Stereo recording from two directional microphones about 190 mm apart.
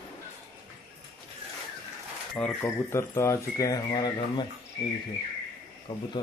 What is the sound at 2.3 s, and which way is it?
Speech, 10° left (ahead or behind).